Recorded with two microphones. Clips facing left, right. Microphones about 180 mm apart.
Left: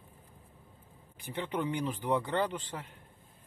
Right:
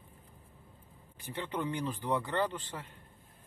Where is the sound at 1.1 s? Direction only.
15° left (ahead or behind).